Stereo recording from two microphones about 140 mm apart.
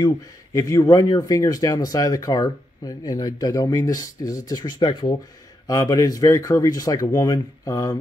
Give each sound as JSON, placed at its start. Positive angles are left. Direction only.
{"t": 0.0, "sound": "speech", "side_deg": 25}